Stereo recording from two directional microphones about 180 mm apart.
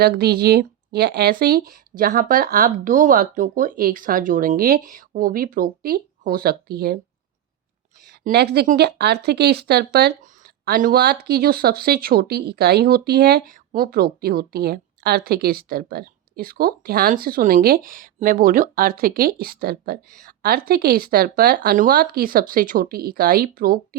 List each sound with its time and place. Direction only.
0.0 s speech: 60° right (ahead or behind)
8.2 s speech: 65° right (ahead or behind)